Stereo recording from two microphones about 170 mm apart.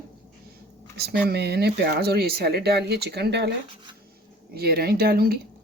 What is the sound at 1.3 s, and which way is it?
Speech, 70° right (ahead or behind).